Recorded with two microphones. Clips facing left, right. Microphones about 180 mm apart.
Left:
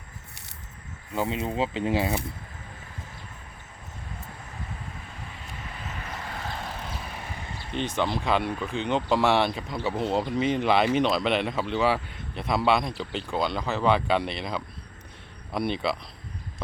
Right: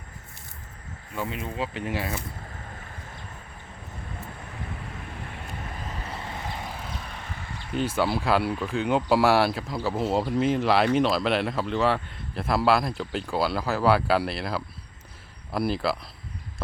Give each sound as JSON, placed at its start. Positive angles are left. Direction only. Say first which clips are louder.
{"t": 1.1, "sound": "speech", "louder": "left 4 dB", "side_deg": 25}
{"t": 5.8, "sound": "vehicle", "louder": "left 2 dB", "side_deg": -30}
{"t": 6.7, "sound": "vehicle", "louder": "left 1 dB", "side_deg": 0}
{"t": 7.7, "sound": "speech", "louder": "right 2 dB", "side_deg": -5}